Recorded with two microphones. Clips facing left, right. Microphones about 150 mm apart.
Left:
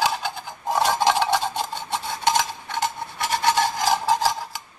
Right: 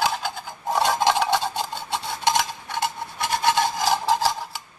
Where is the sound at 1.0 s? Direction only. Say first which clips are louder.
Even; 15° right (ahead or behind).